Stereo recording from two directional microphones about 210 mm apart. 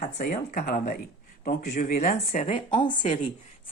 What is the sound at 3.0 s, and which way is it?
Speech, 35° left (ahead or behind).